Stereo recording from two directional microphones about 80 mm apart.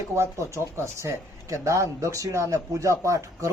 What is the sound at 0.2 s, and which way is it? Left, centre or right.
A man's voice, right.